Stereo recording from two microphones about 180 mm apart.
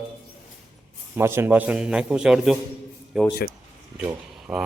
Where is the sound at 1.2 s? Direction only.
15° right (ahead or behind).